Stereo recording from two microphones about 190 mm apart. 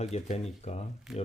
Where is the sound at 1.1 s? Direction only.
Centre (ahead or behind).